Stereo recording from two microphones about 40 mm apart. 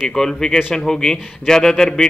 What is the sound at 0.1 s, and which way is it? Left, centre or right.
Speech, centre.